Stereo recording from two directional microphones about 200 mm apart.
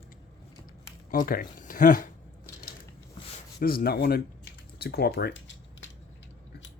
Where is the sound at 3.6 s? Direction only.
50° left (ahead or behind).